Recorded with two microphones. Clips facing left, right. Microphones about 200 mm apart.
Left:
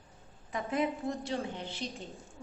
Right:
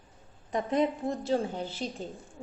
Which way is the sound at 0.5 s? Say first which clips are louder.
Right 5 dB; 35° right (ahead or behind).